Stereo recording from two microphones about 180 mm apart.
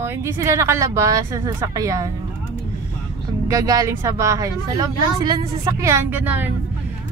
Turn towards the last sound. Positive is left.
turn(degrees=-10)  # may be behind; listen again after turning